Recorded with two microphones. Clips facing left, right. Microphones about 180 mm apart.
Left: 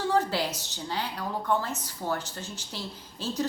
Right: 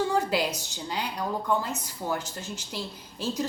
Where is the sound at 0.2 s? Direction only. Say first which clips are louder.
Right 2 dB; 15° right (ahead or behind).